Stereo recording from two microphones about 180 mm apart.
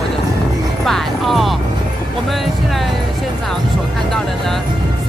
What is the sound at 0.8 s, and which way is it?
Music, centre (ahead or behind).